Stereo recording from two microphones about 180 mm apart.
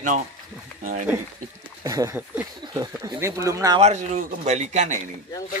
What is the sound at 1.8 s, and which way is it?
Speech, 20° right (ahead or behind).